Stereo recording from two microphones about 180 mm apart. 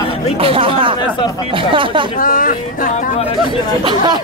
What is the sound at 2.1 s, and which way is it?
Speech, 50° left (ahead or behind).